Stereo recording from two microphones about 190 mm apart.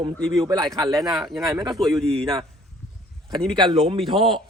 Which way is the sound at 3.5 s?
25° right (ahead or behind).